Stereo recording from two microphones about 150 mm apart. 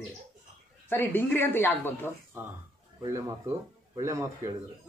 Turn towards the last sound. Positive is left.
turn(degrees=-20)  # may be behind; listen again after turning